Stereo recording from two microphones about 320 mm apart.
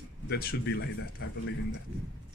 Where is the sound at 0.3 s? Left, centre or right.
Left.